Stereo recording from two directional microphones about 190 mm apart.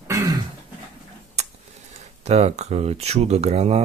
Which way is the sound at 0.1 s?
15° right (ahead or behind).